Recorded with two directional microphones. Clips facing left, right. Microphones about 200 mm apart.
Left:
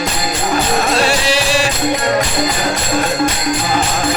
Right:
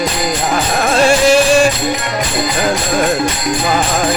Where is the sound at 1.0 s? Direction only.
50° right (ahead or behind).